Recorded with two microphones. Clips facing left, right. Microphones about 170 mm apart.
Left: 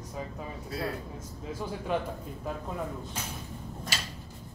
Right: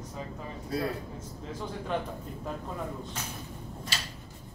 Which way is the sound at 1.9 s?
10° left (ahead or behind).